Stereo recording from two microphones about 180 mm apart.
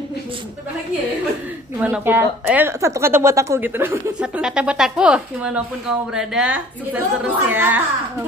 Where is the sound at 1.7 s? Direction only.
5° right (ahead or behind).